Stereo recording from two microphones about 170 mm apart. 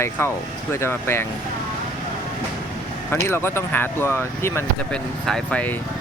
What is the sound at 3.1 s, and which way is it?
Speech, 15° left (ahead or behind).